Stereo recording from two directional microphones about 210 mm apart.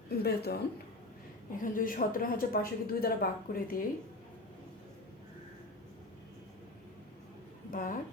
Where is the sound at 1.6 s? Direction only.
40° left (ahead or behind).